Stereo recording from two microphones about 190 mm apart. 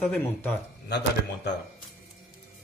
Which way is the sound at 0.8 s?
65° left (ahead or behind).